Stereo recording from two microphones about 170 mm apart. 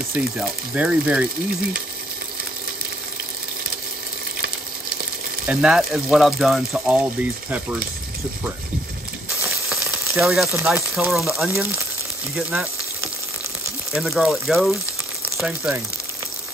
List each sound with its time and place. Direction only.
0.1 s speech: 5° right (ahead or behind)
5.5 s speech: 5° right (ahead or behind)
9.8 s sizzle: 15° right (ahead or behind)
10.2 s speech: centre (ahead or behind)
13.9 s speech: centre (ahead or behind)